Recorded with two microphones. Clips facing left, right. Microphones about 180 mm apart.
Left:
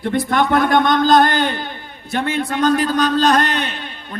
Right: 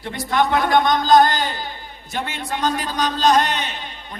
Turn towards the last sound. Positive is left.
turn(degrees=60)  # may be behind; listen again after turning